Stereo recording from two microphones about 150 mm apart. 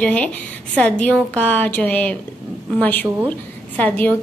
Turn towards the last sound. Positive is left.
turn(degrees=10)  # may be behind; listen again after turning